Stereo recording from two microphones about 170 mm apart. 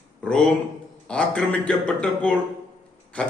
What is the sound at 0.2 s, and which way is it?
A man's voice, 5° left (ahead or behind).